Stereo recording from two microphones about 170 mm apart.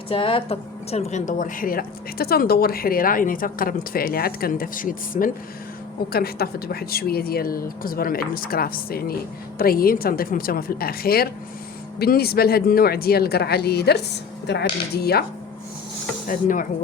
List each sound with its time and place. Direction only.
0.1 s speech: 35° left (ahead or behind); by 5.3 s 55° left (ahead or behind)
6.1 s speech: 65° left (ahead or behind)
16.2 s speech: 50° left (ahead or behind)